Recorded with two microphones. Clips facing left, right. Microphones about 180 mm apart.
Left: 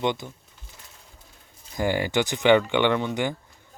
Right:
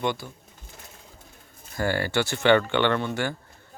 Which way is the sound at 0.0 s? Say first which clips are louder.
Left 2 dB; 20° left (ahead or behind).